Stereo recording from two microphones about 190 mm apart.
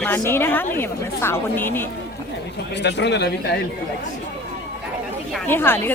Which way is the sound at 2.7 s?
65° left (ahead or behind).